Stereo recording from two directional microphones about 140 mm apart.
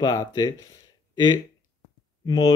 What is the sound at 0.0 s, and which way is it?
Speech, 25° left (ahead or behind).